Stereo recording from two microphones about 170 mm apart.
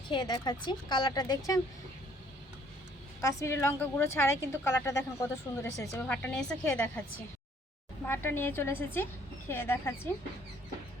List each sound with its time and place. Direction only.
0.1 s a woman's voice: 25° left (ahead or behind)
3.2 s a woman's voice: 15° left (ahead or behind)
6.1 s a woman's voice: 5° left (ahead or behind)
8.0 s a woman's voice: 10° left (ahead or behind)